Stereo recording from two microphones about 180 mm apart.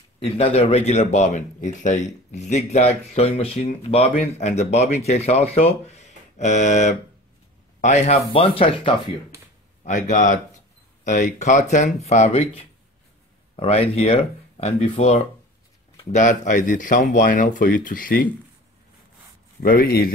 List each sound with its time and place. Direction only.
0.2 s a man's voice: 35° left (ahead or behind)
9.8 s a man's voice: 45° left (ahead or behind)
13.6 s a man's voice: 35° left (ahead or behind); by 18.3 s 50° left (ahead or behind)
19.6 s a man's voice: 55° left (ahead or behind)